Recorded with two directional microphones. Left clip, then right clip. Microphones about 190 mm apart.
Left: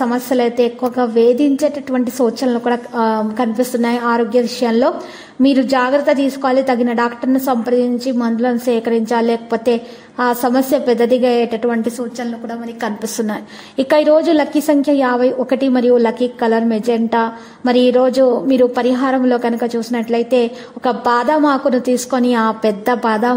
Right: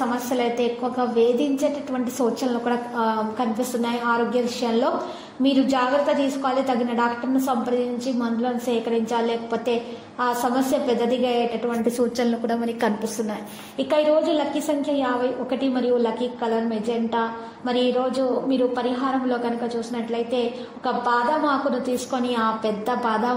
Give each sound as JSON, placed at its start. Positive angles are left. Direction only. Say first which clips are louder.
{"t": 0.0, "sound": "a woman's voice", "louder": "left 8 dB", "side_deg": 35}
{"t": 12.2, "sound": "a woman's voice", "louder": "right 1 dB", "side_deg": 0}
{"t": 13.3, "sound": "a woman's voice", "louder": "left 6 dB", "side_deg": 45}